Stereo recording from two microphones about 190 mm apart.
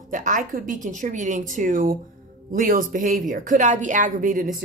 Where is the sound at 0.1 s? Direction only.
45° right (ahead or behind).